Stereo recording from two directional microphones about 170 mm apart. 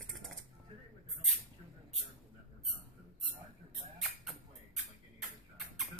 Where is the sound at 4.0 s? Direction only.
Centre (ahead or behind).